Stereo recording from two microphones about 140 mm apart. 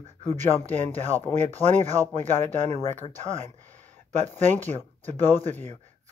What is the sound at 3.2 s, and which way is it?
Speech, 55° right (ahead or behind).